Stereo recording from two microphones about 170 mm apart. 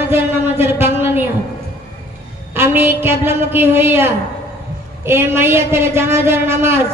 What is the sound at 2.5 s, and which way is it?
A woman's voice, 15° right (ahead or behind).